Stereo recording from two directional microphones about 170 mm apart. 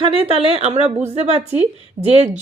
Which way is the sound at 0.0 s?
35° right (ahead or behind).